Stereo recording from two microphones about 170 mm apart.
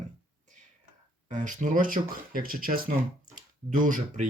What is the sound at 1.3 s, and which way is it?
Speech, 50° right (ahead or behind).